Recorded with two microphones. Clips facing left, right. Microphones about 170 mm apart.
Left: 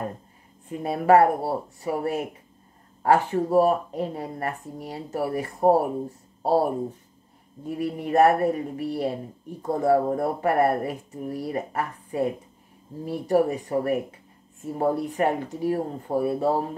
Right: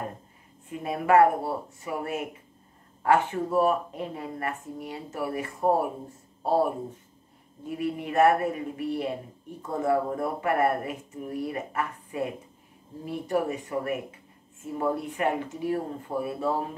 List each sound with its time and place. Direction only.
0.7 s speech: 35° left (ahead or behind)
7.6 s speech: 40° left (ahead or behind)